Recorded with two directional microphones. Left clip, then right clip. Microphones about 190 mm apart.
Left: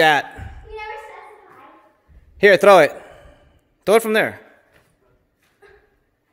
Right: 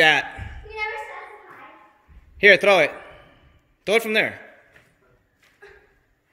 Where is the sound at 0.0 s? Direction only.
30° left (ahead or behind).